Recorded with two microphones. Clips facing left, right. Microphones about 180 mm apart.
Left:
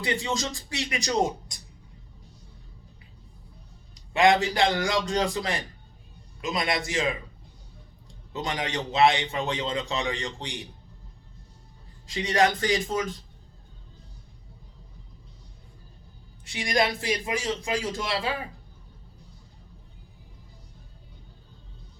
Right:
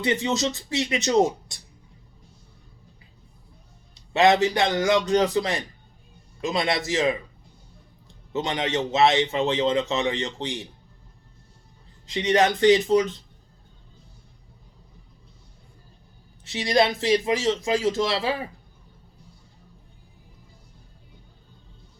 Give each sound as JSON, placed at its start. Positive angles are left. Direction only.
{"t": 0.0, "sound": "a man's voice", "side_deg": -25}
{"t": 3.9, "sound": "a man's voice", "side_deg": -25}
{"t": 8.3, "sound": "a man's voice", "side_deg": -25}
{"t": 12.1, "sound": "a man's voice", "side_deg": -25}
{"t": 16.4, "sound": "a man's voice", "side_deg": -25}